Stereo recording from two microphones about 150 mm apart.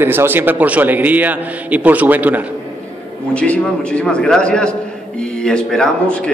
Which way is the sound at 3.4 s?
10° left (ahead or behind).